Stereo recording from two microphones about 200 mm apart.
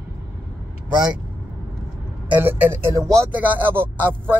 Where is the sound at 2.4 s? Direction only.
10° right (ahead or behind).